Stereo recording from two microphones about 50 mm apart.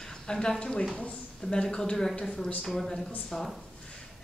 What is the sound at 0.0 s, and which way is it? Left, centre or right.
A woman's voice, centre.